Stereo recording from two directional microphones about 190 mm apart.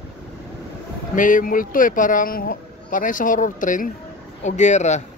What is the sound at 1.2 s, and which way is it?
Speech, 45° left (ahead or behind).